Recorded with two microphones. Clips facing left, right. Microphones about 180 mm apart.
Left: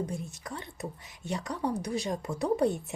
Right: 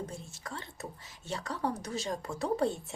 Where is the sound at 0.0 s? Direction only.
15° left (ahead or behind).